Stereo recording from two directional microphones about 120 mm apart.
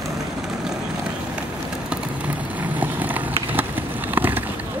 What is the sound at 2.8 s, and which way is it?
Vehicle, 15° right (ahead or behind).